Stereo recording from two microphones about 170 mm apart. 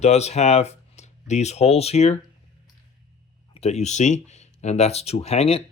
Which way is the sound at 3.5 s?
40° left (ahead or behind).